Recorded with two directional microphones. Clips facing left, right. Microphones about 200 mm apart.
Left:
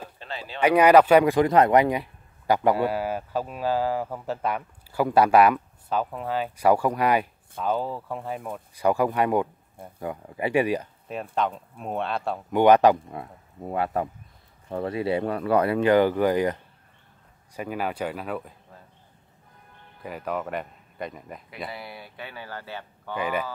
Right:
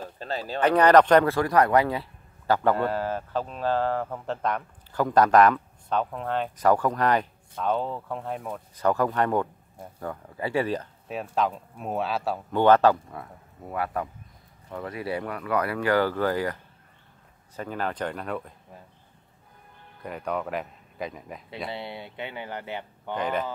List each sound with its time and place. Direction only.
0.2 s a sound: 40° right (ahead or behind)
0.6 s speech: 10° left (ahead or behind)
11.3 s speech: centre (ahead or behind)
12.4 s speech: 15° left (ahead or behind)
17.6 s speech: 10° left (ahead or behind)
20.0 s speech: 5° left (ahead or behind)
21.6 s speech: 25° right (ahead or behind)
23.1 s speech: 5° left (ahead or behind)